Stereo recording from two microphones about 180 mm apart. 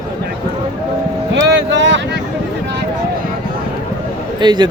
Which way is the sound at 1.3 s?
90° right.